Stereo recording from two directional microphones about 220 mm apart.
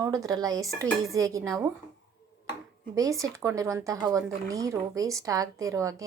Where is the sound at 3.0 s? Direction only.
15° right (ahead or behind).